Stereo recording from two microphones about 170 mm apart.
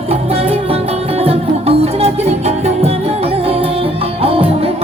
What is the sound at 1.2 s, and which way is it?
Music, 35° right (ahead or behind).